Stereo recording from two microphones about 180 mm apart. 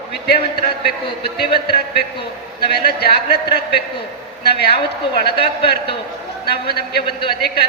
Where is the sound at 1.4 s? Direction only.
65° left (ahead or behind).